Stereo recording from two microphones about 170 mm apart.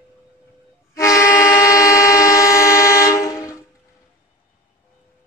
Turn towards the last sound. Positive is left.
turn(degrees=20)  # may be behind; listen again after turning